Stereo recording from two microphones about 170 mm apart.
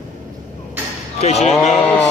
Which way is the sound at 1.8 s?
10° left (ahead or behind).